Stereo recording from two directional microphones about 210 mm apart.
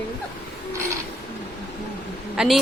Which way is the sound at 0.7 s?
15° right (ahead or behind).